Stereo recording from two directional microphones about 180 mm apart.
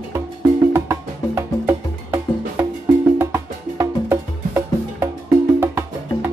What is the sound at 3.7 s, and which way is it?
Music, 15° right (ahead or behind).